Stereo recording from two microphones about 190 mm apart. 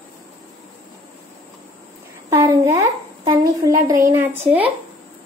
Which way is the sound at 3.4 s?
20° right (ahead or behind).